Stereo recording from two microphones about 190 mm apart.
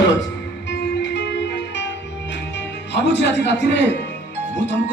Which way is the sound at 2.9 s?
65° left (ahead or behind).